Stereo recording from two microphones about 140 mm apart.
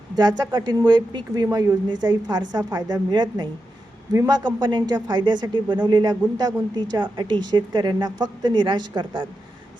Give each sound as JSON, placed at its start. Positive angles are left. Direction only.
{"t": 0.2, "sound": "speech", "side_deg": -30}